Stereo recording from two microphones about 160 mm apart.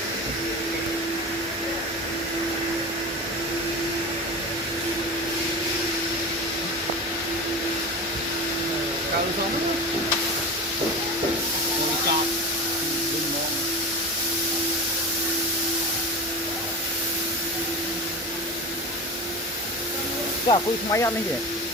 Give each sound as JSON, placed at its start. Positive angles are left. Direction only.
{"t": 20.5, "sound": "speech", "side_deg": 20}